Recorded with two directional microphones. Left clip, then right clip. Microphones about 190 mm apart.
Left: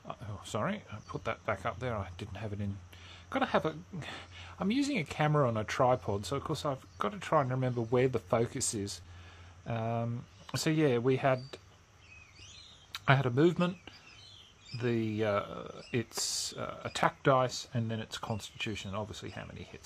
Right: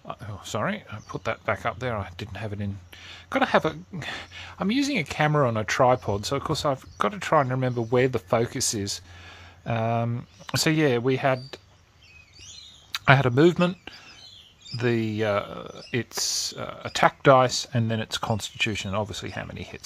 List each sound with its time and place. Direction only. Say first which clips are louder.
0.0 s speech: right 7 dB; 20° right (ahead or behind)
12.9 s speech: right 9 dB; 35° right (ahead or behind)
17.2 s speech: right 12 dB; 35° right (ahead or behind)